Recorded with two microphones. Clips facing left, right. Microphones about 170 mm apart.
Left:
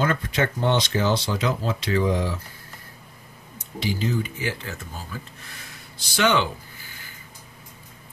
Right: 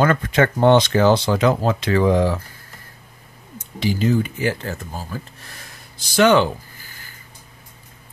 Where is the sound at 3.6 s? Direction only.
55° right (ahead or behind).